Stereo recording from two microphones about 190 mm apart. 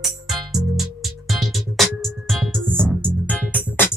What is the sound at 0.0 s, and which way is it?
Music, centre (ahead or behind).